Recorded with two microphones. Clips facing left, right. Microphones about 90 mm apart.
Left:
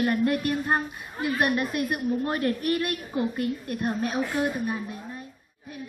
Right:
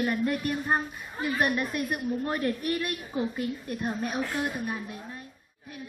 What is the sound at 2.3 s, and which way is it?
Speech, 55° left (ahead or behind).